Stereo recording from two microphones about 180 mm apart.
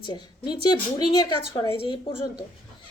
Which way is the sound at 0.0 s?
25° left (ahead or behind).